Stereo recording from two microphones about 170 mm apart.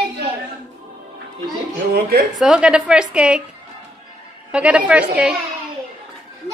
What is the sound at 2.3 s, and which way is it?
A woman's voice, 5° right (ahead or behind).